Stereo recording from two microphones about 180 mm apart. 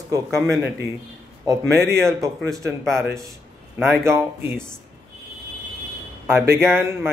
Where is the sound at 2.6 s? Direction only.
15° right (ahead or behind).